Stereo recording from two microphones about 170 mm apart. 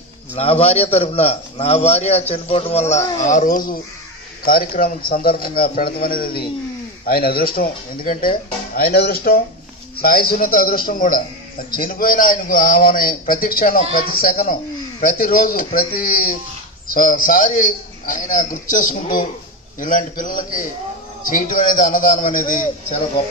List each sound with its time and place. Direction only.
0.4 s a man's voice: 35° left (ahead or behind)